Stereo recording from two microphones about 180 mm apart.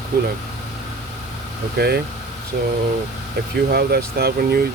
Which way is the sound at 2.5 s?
50° right (ahead or behind).